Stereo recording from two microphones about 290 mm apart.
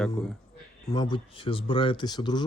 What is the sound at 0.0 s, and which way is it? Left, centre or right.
Speech, centre.